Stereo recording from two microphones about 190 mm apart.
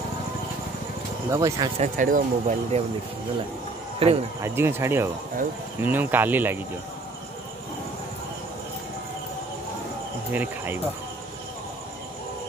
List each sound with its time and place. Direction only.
1.3 s speech: 20° right (ahead or behind)
1.8 s speech: 45° right (ahead or behind)
4.0 s speech: 30° right (ahead or behind)
4.4 s speech: 10° right (ahead or behind)
10.3 s speech: 10° right (ahead or behind)